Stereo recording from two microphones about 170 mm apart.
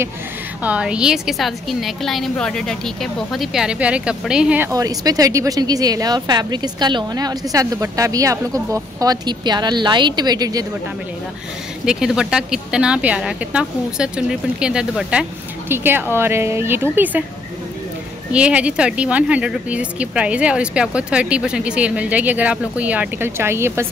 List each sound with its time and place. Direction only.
0.7 s a woman's voice: 5° right (ahead or behind); by 10.7 s 20° right (ahead or behind)
11.8 s a woman's voice: 5° right (ahead or behind)
18.3 s speech: 5° right (ahead or behind)